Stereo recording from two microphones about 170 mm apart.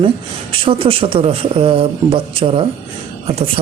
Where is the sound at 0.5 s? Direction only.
30° right (ahead or behind).